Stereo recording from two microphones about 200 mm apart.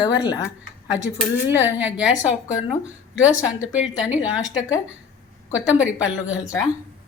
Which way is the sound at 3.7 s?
5° right (ahead or behind).